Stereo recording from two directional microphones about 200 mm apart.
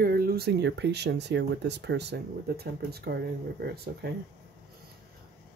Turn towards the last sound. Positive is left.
turn(degrees=-55)  # may be behind; listen again after turning